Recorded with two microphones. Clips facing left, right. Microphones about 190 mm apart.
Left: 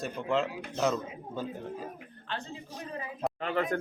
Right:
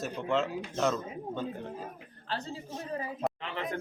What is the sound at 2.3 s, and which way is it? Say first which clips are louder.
Speech: right 2 dB; 40° right (ahead or behind).